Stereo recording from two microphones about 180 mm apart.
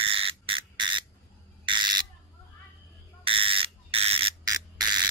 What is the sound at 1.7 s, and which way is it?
Bird, 25° right (ahead or behind).